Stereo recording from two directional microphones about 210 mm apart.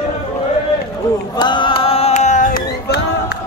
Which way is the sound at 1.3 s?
20° left (ahead or behind).